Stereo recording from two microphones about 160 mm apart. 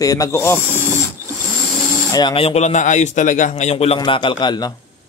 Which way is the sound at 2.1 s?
30° left (ahead or behind).